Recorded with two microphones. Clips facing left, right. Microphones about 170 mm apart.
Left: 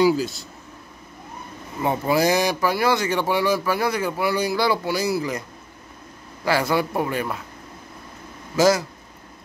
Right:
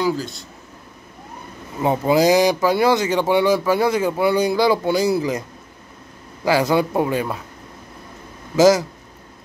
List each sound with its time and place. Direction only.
0.0 s speech: 5° left (ahead or behind)
1.8 s speech: 20° right (ahead or behind)
6.4 s speech: 15° right (ahead or behind)
8.5 s speech: 20° right (ahead or behind)